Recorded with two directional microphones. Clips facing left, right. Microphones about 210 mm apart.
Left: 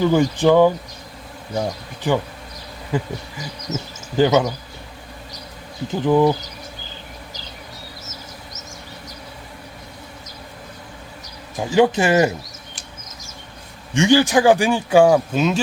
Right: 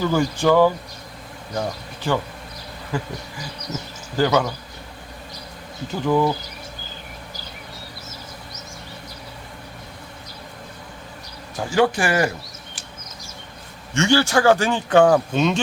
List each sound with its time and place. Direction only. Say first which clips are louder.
0.0 s insect: left 4 dB; 20° left (ahead or behind)
1.5 s speech: left 2 dB; 15° left (ahead or behind)
2.9 s insect: left 4 dB; 20° left (ahead or behind)
5.9 s speech: left 4 dB; 15° left (ahead or behind)
11.5 s insect: left 3 dB; 20° left (ahead or behind)
13.9 s speech: left 3 dB; 15° left (ahead or behind)